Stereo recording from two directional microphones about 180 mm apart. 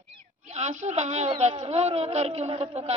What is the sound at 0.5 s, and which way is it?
A woman's voice, 40° right (ahead or behind).